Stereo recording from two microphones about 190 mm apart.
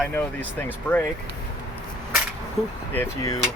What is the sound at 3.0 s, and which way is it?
Speech, 15° left (ahead or behind).